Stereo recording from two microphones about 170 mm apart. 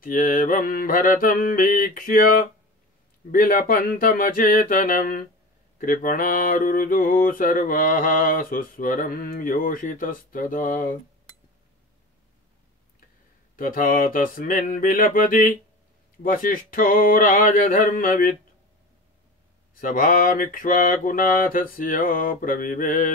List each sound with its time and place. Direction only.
0.0 s mantra: 55° left (ahead or behind)
13.6 s mantra: 55° left (ahead or behind)
19.7 s mantra: 55° left (ahead or behind)